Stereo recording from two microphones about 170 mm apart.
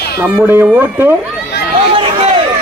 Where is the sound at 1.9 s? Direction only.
30° right (ahead or behind).